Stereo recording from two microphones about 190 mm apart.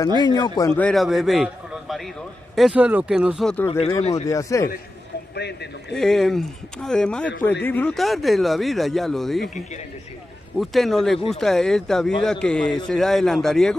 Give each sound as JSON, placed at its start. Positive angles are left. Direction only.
{"t": 0.2, "sound": "speech", "side_deg": 20}
{"t": 4.1, "sound": "speech", "side_deg": 15}
{"t": 5.3, "sound": "a man's voice", "side_deg": 60}
{"t": 5.9, "sound": "speech", "side_deg": 0}
{"t": 10.6, "sound": "speech", "side_deg": 0}